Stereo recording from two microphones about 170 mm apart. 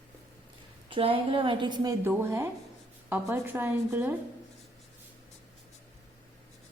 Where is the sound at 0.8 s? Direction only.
30° right (ahead or behind); by 4.2 s 10° right (ahead or behind).